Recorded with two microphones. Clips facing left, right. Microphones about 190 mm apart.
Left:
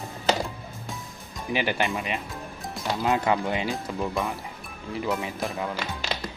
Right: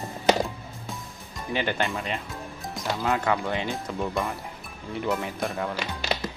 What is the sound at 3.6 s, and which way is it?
Speech, centre (ahead or behind).